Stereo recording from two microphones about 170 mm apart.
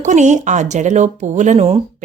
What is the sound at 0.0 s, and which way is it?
Speech, 45° right (ahead or behind).